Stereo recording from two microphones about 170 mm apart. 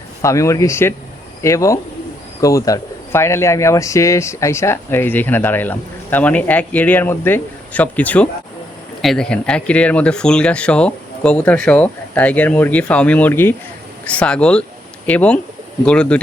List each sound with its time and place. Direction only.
0.2 s speech: 15° left (ahead or behind)